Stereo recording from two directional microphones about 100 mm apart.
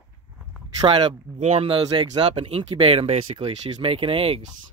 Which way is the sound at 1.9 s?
60° right (ahead or behind).